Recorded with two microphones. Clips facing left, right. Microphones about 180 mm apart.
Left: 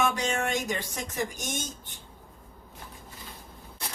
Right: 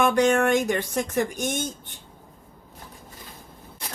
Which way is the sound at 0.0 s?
60° right (ahead or behind).